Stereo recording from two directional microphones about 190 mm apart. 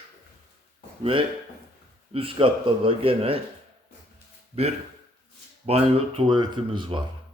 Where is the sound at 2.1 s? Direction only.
30° right (ahead or behind).